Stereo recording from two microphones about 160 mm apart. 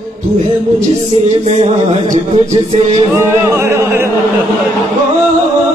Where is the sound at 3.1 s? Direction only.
15° right (ahead or behind).